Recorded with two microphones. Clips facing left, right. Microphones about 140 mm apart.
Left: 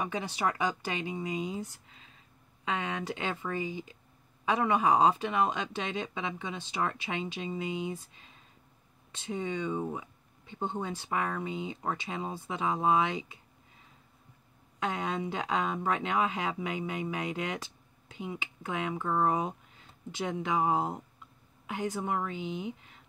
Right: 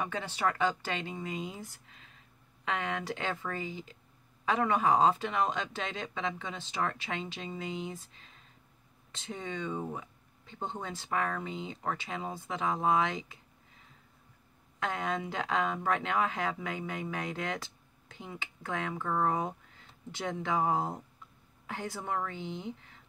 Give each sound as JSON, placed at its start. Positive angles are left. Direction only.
{"t": 0.0, "sound": "speech", "side_deg": 15}
{"t": 2.8, "sound": "speech", "side_deg": 15}
{"t": 14.9, "sound": "speech", "side_deg": 20}